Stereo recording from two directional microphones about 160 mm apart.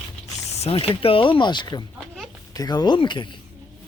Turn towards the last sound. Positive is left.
turn(degrees=30)  # may be behind; listen again after turning